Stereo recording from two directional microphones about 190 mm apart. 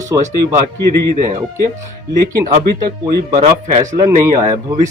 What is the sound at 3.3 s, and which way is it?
Speech, 35° right (ahead or behind).